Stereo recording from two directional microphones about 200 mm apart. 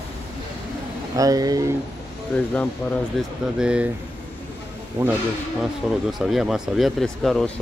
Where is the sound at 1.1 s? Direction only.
15° right (ahead or behind).